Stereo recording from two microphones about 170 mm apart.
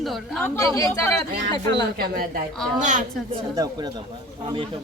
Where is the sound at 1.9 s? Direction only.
60° right (ahead or behind).